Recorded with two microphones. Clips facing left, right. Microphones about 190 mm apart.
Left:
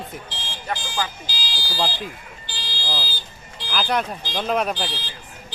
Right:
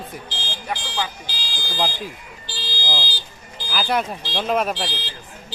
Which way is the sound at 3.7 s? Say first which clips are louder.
Right 1 dB; 5° right (ahead or behind).